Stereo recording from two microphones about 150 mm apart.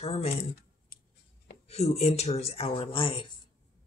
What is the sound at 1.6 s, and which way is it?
Speech, 45° left (ahead or behind).